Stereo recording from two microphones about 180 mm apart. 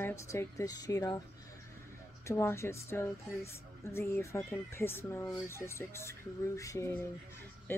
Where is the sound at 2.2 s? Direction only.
15° left (ahead or behind).